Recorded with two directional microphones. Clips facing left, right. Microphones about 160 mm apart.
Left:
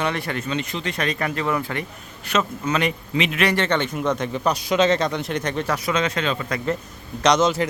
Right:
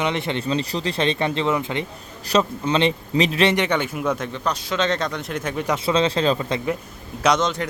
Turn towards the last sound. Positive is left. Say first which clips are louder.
# left 2 dB
turn(degrees=5)  # may be behind; listen again after turning